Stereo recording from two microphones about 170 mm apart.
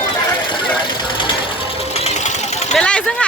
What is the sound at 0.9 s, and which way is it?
Sewing machine, 25° left (ahead or behind).